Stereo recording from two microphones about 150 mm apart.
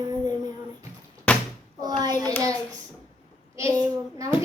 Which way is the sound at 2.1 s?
10° left (ahead or behind).